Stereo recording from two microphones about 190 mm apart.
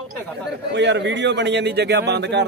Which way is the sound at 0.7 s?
65° right (ahead or behind).